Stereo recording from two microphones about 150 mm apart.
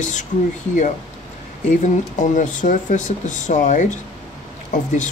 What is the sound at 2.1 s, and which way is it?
Speech, 55° left (ahead or behind).